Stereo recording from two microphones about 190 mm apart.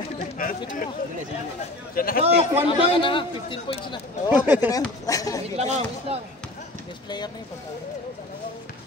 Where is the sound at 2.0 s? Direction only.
50° left (ahead or behind).